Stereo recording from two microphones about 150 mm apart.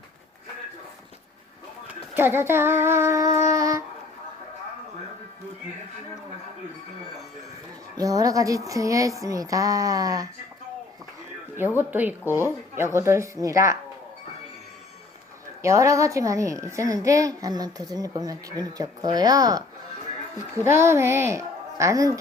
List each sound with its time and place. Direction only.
1.9 s speech: 15° right (ahead or behind)
7.9 s a woman's voice: 25° right (ahead or behind)
11.8 s a woman's voice: 10° right (ahead or behind)
15.6 s a woman's voice: 20° right (ahead or behind)
20.7 s a woman's voice: 15° right (ahead or behind)